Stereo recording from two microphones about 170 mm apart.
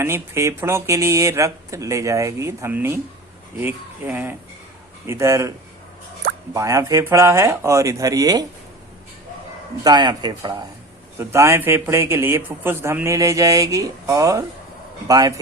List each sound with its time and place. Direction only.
0.0 s a man's voice: 15° right (ahead or behind)
9.8 s a man's voice: 25° right (ahead or behind)